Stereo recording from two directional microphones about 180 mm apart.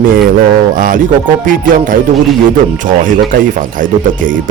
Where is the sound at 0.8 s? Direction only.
50° right (ahead or behind).